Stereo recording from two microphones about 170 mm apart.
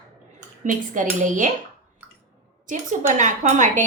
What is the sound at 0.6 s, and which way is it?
Speech, 50° right (ahead or behind).